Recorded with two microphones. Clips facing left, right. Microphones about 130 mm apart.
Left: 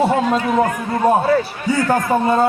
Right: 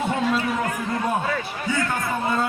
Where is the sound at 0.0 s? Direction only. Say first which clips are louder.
Left 6 dB; 40° left (ahead or behind).